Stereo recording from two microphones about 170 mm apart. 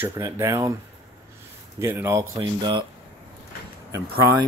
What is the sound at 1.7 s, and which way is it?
Speech, 15° right (ahead or behind).